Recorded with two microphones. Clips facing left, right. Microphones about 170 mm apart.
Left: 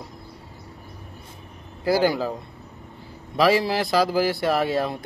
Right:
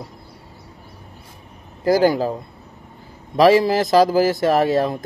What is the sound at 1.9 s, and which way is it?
Speech, 45° right (ahead or behind).